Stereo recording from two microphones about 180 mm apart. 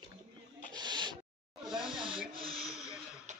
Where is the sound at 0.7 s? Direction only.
25° right (ahead or behind).